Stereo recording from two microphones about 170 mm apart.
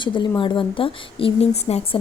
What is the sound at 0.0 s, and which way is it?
A woman's voice, 30° left (ahead or behind).